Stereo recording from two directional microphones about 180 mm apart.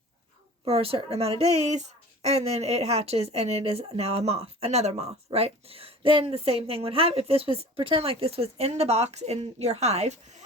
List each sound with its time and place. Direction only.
0.6 s speech: 30° right (ahead or behind)